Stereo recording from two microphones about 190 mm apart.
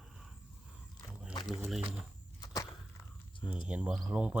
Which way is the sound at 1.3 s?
25° left (ahead or behind).